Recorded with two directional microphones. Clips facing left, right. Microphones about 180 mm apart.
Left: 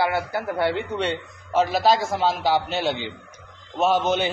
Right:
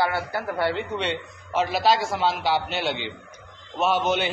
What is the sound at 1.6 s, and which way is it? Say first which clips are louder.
A man's voice: left 2 dB; 40° left (ahead or behind).